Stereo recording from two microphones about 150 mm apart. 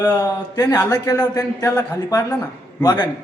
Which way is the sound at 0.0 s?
25° left (ahead or behind).